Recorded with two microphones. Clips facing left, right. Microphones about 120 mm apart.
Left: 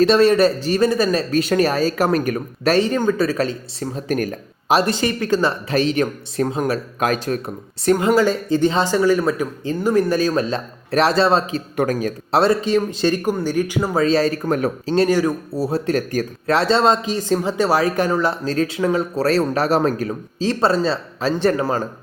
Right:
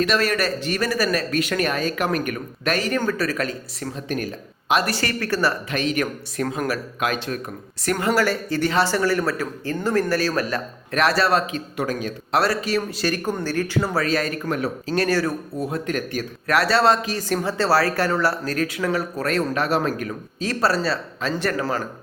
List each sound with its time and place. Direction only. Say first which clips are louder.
0.0 s a man's voice: left 8 dB; 30° left (ahead or behind)
4.1 s a man's voice: left 6 dB; 45° left (ahead or behind)
4.7 s speech: left 4 dB; 25° left (ahead or behind)
5.6 s speech: left 5 dB; 30° left (ahead or behind)
7.0 s speech: left 5 dB; 40° left (ahead or behind)
11.8 s a man's voice: left 6 dB; 45° left (ahead or behind)
12.3 s speech: left 5 dB; 25° left (ahead or behind)
14.0 s a man's voice: left 6 dB; 30° left (ahead or behind)
14.9 s speech: left 5 dB; 20° left (ahead or behind)
15.5 s speech: left 5 dB; 35° left (ahead or behind)
20.0 s speech: left 5 dB; 25° left (ahead or behind)